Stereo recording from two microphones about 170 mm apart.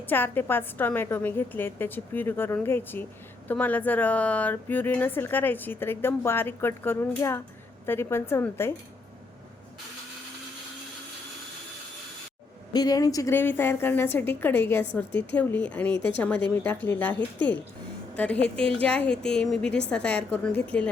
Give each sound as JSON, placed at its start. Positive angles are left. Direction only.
{"t": 0.0, "sound": "speech", "side_deg": 10}
{"t": 12.7, "sound": "a woman's voice", "side_deg": 25}